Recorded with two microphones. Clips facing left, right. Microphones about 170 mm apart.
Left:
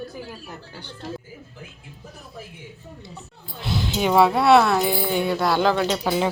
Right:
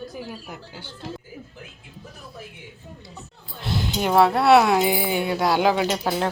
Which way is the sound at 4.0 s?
Centre (ahead or behind).